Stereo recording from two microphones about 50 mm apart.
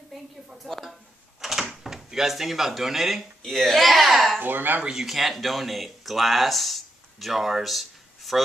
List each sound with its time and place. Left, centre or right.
0.1 s a sound: centre
1.4 s speech: centre
4.4 s speech: right
4.9 s speech: centre